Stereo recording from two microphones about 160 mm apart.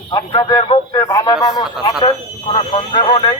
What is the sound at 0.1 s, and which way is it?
A man's voice, 25° left (ahead or behind).